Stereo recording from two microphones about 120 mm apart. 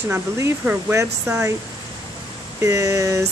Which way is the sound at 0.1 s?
15° right (ahead or behind).